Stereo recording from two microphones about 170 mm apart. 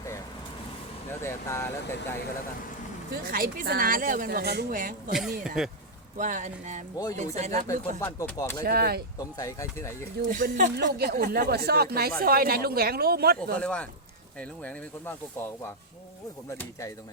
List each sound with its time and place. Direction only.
1.2 s speech: 15° left (ahead or behind)
3.1 s speech: 55° right (ahead or behind)
5.6 s speech: 5° right (ahead or behind)
6.1 s speech: 50° right (ahead or behind)
6.9 s speech: 20° left (ahead or behind)
7.3 s speech: 40° right (ahead or behind)
7.7 s speech: 15° left (ahead or behind)
8.6 s speech: 65° right (ahead or behind)
9.1 s speech: 20° left (ahead or behind)
10.2 s speech: 50° right (ahead or behind)
10.8 s speech: 65° right (ahead or behind)
13.6 s speech: 5° left (ahead or behind)